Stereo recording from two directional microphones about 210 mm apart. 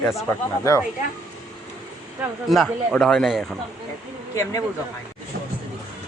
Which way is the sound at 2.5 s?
Centre (ahead or behind).